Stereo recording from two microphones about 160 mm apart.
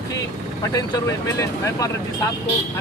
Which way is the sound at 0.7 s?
20° left (ahead or behind).